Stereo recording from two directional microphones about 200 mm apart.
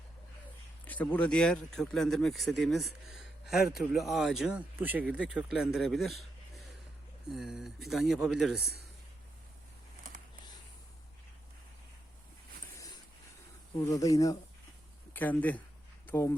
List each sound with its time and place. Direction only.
0.9 s speech: 10° left (ahead or behind)
13.7 s speech: 15° left (ahead or behind)